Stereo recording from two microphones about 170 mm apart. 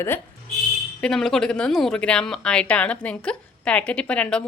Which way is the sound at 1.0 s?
5° left (ahead or behind).